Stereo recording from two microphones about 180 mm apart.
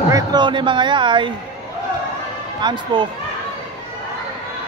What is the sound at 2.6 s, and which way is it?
Speech, 25° right (ahead or behind).